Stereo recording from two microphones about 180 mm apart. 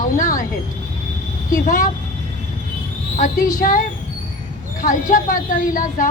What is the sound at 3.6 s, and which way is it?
A woman's voice, 45° left (ahead or behind).